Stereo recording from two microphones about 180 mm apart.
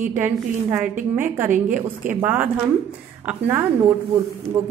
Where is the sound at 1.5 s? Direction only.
45° right (ahead or behind).